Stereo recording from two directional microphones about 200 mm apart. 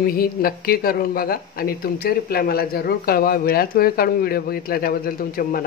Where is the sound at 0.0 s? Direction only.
45° left (ahead or behind).